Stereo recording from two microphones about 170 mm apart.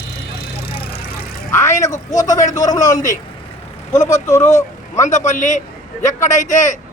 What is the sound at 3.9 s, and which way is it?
A man's voice, 45° left (ahead or behind).